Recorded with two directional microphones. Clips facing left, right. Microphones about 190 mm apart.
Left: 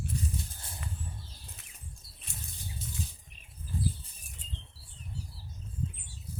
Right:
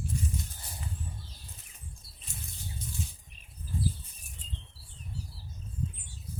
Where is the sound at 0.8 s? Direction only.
75° left (ahead or behind).